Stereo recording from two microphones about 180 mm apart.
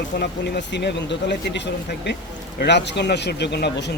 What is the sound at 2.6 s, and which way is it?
Speech, 70° left (ahead or behind).